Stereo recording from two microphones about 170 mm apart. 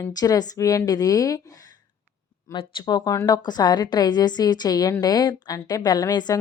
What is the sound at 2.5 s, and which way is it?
A woman's voice, 30° left (ahead or behind).